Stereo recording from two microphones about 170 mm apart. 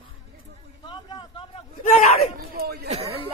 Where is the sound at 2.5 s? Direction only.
65° right (ahead or behind).